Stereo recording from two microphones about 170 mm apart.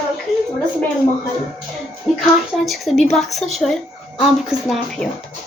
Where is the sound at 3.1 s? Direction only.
Centre (ahead or behind).